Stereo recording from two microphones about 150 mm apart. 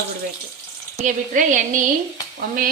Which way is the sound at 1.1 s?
55° right (ahead or behind).